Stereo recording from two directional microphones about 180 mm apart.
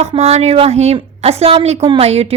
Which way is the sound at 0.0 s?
35° right (ahead or behind).